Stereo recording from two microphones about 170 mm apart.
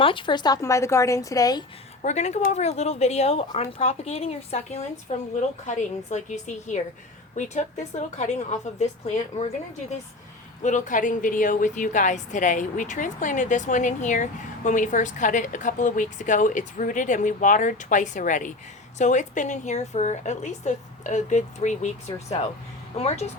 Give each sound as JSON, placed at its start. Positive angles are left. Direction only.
{"t": 0.0, "sound": "a woman's voice", "side_deg": 30}
{"t": 2.0, "sound": "a woman's voice", "side_deg": 40}
{"t": 10.6, "sound": "a woman's voice", "side_deg": 45}